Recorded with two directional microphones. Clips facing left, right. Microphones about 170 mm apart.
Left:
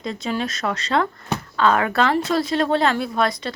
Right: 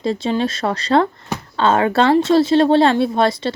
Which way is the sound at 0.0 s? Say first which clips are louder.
Right 6 dB; 30° right (ahead or behind).